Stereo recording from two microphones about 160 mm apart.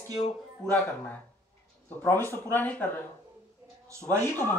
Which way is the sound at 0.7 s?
5° left (ahead or behind).